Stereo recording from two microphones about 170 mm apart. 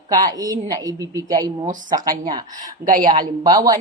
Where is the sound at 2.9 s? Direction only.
55° right (ahead or behind).